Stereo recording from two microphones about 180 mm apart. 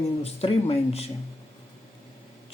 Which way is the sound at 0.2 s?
35° left (ahead or behind).